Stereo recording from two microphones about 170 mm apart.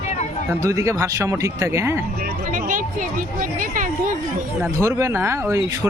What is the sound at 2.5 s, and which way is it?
Speech, 55° right (ahead or behind).